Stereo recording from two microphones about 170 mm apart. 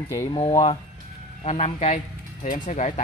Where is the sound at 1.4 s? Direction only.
40° left (ahead or behind).